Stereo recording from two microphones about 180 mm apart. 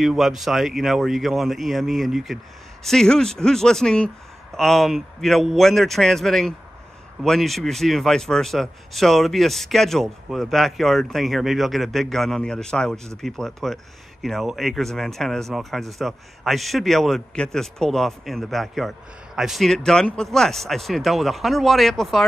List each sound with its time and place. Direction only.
0.0 s a man's voice: centre (ahead or behind)